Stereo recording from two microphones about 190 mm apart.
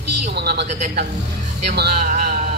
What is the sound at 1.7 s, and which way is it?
Speech, 55° right (ahead or behind).